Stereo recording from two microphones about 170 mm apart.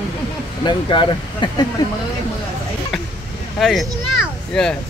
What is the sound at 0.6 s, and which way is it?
Speech, 30° left (ahead or behind).